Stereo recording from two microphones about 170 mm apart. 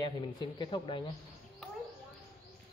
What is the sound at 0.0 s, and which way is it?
Speech, 25° left (ahead or behind).